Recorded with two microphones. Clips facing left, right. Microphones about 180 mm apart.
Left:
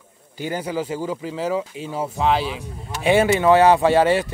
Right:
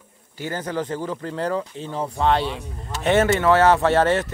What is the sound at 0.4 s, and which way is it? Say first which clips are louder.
Speech: left 2 dB; 10° left (ahead or behind).